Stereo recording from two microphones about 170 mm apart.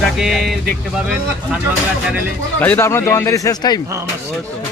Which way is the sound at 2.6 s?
10° left (ahead or behind).